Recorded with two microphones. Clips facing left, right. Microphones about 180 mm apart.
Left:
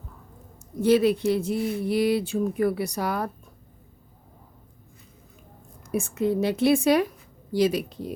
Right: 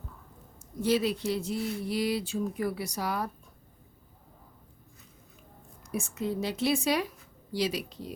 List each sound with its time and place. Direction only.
0.8 s speech: 55° left (ahead or behind)
5.9 s speech: 55° left (ahead or behind)